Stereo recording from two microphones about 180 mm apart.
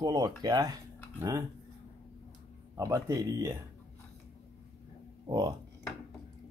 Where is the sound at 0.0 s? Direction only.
20° right (ahead or behind).